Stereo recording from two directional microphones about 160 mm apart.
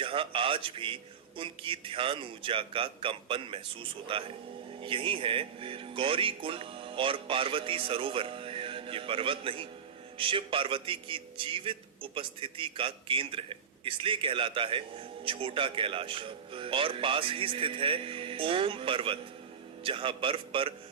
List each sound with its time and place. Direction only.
0.0 s a man's voice: 35° right (ahead or behind)